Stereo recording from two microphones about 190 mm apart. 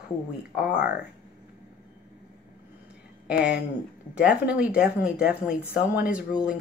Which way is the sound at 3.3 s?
5° right (ahead or behind).